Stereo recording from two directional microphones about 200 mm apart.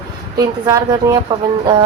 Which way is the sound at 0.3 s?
20° right (ahead or behind).